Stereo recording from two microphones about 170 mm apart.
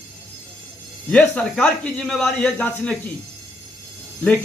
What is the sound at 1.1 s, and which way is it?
A man's voice, 5° left (ahead or behind).